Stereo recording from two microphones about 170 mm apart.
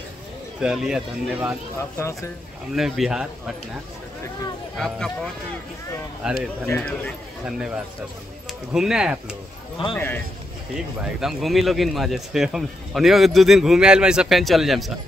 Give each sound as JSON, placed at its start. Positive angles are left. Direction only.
{"t": 0.6, "sound": "speech", "side_deg": -5}
{"t": 2.0, "sound": "speech", "side_deg": 15}
{"t": 2.7, "sound": "speech", "side_deg": 0}
{"t": 4.7, "sound": "speech", "side_deg": 5}
{"t": 6.6, "sound": "speech", "side_deg": 5}
{"t": 7.4, "sound": "speech", "side_deg": -5}
{"t": 9.9, "sound": "speech", "side_deg": 10}
{"t": 11.0, "sound": "speech", "side_deg": -5}